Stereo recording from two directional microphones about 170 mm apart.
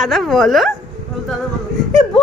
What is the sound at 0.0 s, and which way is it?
Speech, centre (ahead or behind).